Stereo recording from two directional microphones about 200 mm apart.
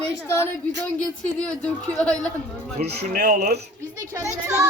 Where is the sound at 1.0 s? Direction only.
5° left (ahead or behind).